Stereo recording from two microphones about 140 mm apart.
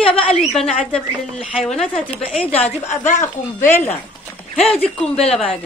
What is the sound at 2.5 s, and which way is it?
Speech, 55° left (ahead or behind).